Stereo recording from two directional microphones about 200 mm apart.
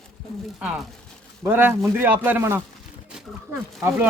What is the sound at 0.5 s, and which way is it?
Speech, 5° right (ahead or behind).